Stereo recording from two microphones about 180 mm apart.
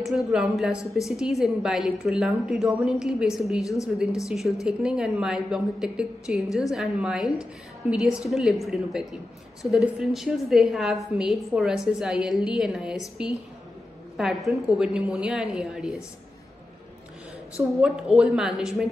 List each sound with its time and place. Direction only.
0.0 s a woman's voice: centre (ahead or behind)
3.6 s a woman's voice: 15° left (ahead or behind)
4.3 s a woman's voice: 5° right (ahead or behind)
17.8 s a woman's voice: 5° right (ahead or behind)